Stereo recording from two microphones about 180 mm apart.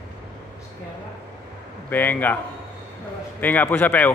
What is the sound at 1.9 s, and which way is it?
Speech, 10° left (ahead or behind).